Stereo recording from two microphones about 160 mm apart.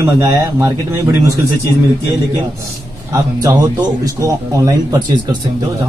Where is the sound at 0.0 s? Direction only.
20° right (ahead or behind).